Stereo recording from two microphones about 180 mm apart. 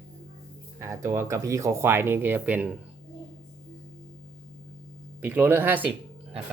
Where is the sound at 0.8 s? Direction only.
15° right (ahead or behind).